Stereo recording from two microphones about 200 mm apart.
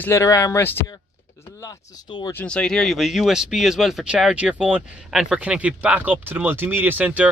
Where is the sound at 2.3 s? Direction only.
5° left (ahead or behind).